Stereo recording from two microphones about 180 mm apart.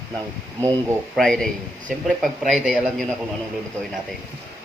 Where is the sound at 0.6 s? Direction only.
15° right (ahead or behind).